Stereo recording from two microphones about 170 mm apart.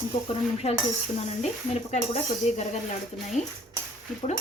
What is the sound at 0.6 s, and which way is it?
Speech, 40° left (ahead or behind).